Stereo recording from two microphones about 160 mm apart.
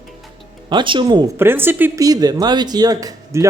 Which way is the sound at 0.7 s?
30° right (ahead or behind).